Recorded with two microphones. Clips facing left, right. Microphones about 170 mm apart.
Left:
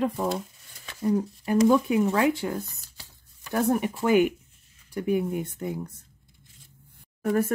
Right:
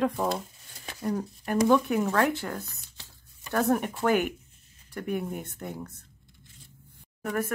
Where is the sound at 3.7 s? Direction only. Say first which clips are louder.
Left 3 dB; 5° left (ahead or behind).